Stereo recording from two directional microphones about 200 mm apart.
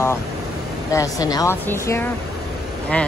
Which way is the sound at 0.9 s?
15° left (ahead or behind).